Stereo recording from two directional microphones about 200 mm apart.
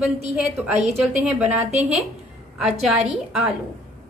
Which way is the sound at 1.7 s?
35° right (ahead or behind).